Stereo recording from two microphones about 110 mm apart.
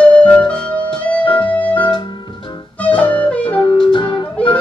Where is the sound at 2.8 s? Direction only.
15° left (ahead or behind).